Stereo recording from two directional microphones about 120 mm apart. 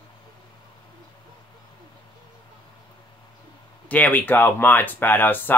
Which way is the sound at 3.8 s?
10° left (ahead or behind).